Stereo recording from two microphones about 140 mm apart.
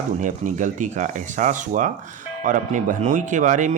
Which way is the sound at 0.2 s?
65° right (ahead or behind).